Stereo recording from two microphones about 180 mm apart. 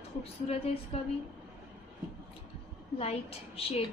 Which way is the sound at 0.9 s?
35° left (ahead or behind).